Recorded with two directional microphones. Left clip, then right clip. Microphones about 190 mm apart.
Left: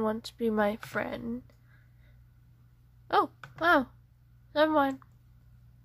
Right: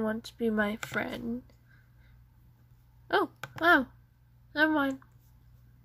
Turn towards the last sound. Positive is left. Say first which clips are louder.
# left 2 dB
turn(degrees=20)  # may be behind; listen again after turning